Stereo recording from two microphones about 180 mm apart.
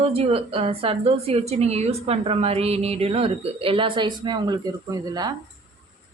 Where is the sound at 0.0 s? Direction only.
35° right (ahead or behind).